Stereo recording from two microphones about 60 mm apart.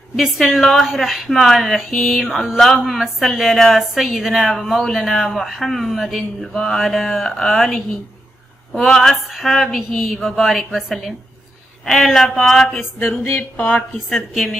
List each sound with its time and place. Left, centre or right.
0.1 s speech: centre
13.4 s speech: left
13.9 s speech: centre